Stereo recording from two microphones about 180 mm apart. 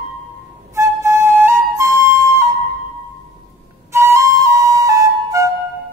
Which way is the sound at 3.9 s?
15° right (ahead or behind).